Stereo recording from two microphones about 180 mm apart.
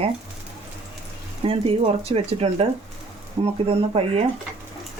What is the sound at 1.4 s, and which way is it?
Speech, 30° right (ahead or behind).